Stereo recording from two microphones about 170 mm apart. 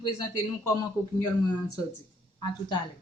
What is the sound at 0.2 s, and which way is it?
Speech, 15° left (ahead or behind).